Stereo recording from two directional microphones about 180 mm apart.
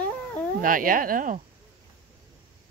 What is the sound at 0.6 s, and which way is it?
Speech, 50° right (ahead or behind).